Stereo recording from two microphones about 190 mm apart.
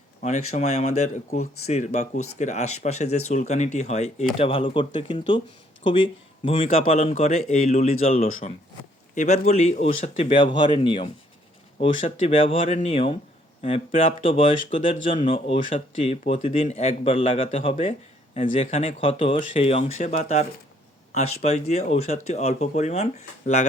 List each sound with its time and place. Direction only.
0.2 s speech: 40° left (ahead or behind)